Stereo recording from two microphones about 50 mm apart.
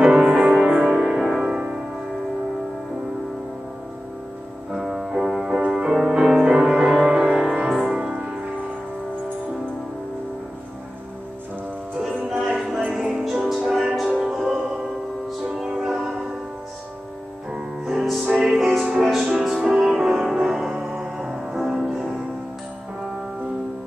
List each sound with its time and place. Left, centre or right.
0.0 s music: centre
4.7 s music: centre
12.4 s music: centre
15.6 s music: centre
17.5 s music: centre